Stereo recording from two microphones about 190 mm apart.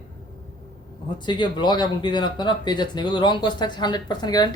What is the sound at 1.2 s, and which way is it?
A man's voice, 25° left (ahead or behind).